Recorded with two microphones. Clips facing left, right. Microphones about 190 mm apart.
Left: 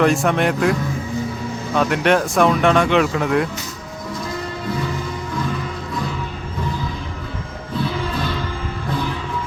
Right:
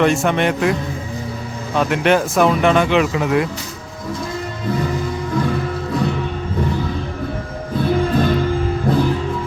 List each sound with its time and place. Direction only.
0.0 s speech: centre (ahead or behind)
7.9 s music: 45° right (ahead or behind)